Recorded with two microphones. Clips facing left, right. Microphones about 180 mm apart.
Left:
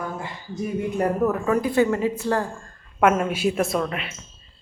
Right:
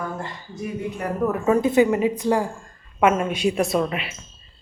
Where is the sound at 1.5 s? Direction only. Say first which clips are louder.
Right 5 dB; 25° right (ahead or behind).